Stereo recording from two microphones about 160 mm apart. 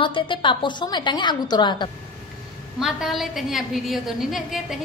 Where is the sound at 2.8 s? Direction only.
Centre (ahead or behind).